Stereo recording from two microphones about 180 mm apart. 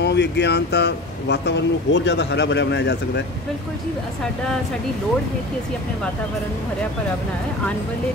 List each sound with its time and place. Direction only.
0.0 s speech: 70° left (ahead or behind)